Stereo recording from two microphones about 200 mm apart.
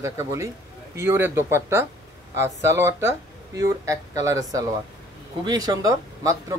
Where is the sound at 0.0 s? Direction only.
15° right (ahead or behind).